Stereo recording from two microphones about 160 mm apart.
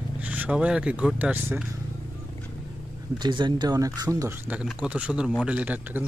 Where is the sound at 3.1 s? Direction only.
30° right (ahead or behind).